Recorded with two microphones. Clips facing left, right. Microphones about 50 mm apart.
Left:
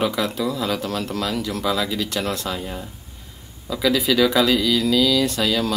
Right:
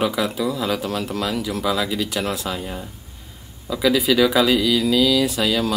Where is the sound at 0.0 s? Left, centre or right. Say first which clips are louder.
Right 1 dB; centre.